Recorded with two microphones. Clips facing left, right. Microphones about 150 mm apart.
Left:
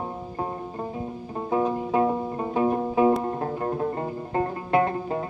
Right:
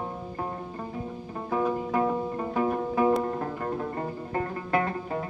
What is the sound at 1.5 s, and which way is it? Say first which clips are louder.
Music: left 3 dB; 25° left (ahead or behind).